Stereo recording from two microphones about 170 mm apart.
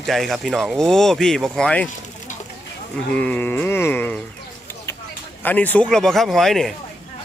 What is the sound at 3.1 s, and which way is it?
Music, 5° left (ahead or behind).